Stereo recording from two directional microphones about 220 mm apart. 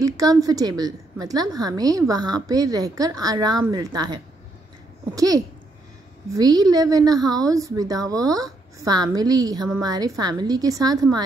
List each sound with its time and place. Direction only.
0.0 s a woman's voice: 15° right (ahead or behind)